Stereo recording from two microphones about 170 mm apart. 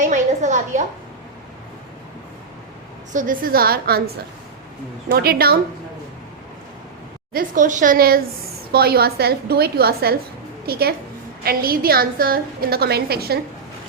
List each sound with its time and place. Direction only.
0.0 s a sound: 45° right (ahead or behind)
3.1 s a woman's voice: 50° right (ahead or behind)
7.3 s a woman's voice: 50° right (ahead or behind); by 13.4 s 65° right (ahead or behind)